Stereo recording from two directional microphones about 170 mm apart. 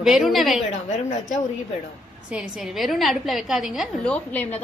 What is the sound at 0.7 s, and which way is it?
Speech, 45° left (ahead or behind).